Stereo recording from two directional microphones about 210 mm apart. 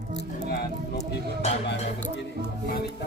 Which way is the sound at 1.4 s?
30° left (ahead or behind).